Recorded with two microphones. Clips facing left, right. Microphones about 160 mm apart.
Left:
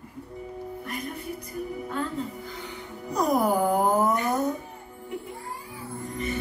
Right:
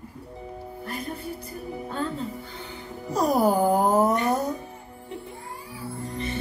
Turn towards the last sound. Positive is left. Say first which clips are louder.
# even
turn(degrees=-30)  # may be behind; listen again after turning